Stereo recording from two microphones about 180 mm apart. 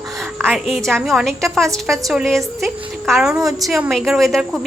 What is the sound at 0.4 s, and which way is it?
A woman's voice, centre (ahead or behind).